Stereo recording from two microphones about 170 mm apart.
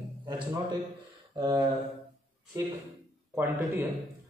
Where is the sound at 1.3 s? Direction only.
25° right (ahead or behind).